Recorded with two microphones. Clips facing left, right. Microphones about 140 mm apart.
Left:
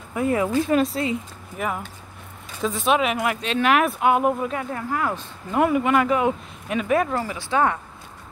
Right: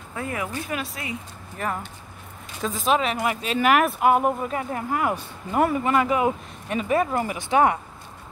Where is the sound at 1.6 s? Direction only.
10° left (ahead or behind); by 5.6 s 10° right (ahead or behind).